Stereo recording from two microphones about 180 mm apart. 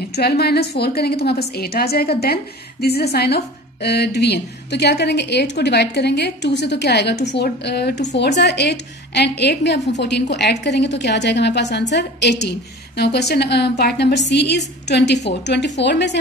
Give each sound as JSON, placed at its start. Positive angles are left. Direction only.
{"t": 0.1, "sound": "a woman's voice", "side_deg": 65}